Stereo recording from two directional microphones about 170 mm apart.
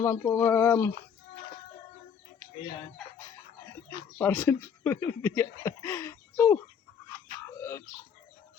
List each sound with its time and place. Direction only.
0.0 s speech: 20° left (ahead or behind)
3.8 s speech: 15° left (ahead or behind)
7.6 s bird: 15° left (ahead or behind)